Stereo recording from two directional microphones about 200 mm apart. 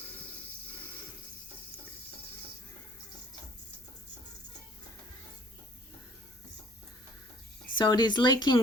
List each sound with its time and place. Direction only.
7.8 s speech: 20° left (ahead or behind)